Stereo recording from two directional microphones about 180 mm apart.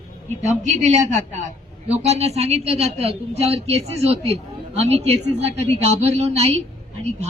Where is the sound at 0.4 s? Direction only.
40° right (ahead or behind).